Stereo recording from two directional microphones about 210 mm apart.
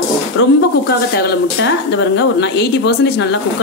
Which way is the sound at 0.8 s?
50° left (ahead or behind).